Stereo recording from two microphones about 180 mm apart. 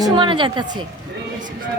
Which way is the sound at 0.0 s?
25° right (ahead or behind).